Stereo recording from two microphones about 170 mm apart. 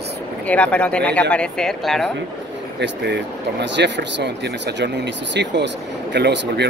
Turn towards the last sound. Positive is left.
turn(degrees=-85)